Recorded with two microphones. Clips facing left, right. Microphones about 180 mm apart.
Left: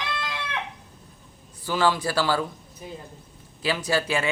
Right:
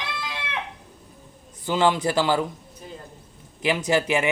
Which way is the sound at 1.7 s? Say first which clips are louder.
Right 2 dB; 20° right (ahead or behind).